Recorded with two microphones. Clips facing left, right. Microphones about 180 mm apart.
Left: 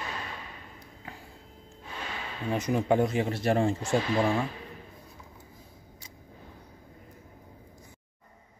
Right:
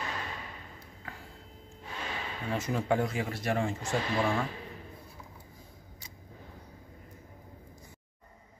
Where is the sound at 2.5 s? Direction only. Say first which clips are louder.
Left 4 dB; 20° left (ahead or behind).